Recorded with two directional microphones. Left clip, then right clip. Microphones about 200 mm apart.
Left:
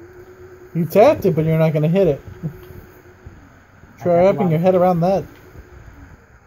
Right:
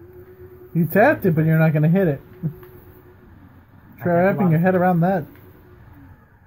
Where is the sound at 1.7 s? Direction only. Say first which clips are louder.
Left 4 dB; 20° left (ahead or behind).